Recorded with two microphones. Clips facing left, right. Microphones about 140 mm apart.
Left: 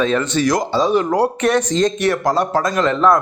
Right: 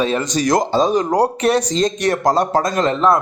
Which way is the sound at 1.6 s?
15° right (ahead or behind).